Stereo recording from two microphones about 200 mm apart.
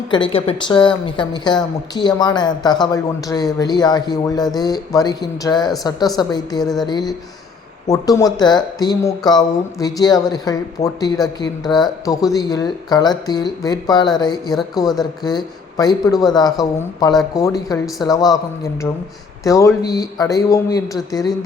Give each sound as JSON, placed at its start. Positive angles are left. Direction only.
{"t": 0.3, "sound": "a woman's voice", "side_deg": 25}